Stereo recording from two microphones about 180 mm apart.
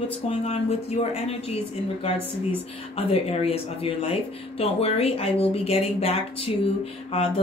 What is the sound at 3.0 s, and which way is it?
Speech, 35° left (ahead or behind).